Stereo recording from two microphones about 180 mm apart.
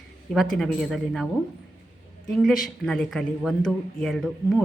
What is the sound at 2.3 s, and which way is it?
Speech, centre (ahead or behind).